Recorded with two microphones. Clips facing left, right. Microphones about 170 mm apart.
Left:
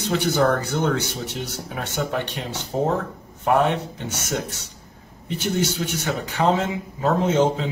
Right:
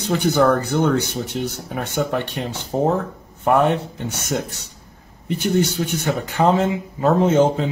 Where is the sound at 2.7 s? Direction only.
40° right (ahead or behind).